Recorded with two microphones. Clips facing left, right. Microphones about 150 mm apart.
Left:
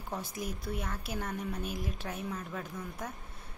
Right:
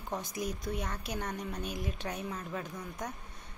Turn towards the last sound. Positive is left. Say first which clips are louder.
# even
turn(degrees=0)  # may be behind; listen again after turning